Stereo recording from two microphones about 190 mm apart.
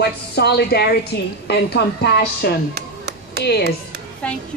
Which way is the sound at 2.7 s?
60° right (ahead or behind).